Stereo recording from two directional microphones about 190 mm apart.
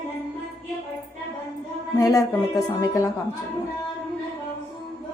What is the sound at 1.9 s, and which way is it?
Speech, 15° left (ahead or behind).